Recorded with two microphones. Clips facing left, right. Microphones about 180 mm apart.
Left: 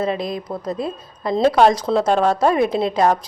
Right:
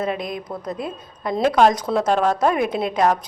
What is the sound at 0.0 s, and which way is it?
A woman's voice, 30° left (ahead or behind).